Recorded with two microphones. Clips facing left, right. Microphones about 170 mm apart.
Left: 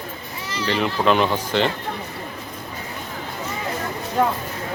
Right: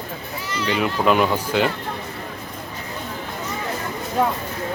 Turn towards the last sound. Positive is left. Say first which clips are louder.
# left 1 dB
turn(degrees=-5)  # may be behind; listen again after turning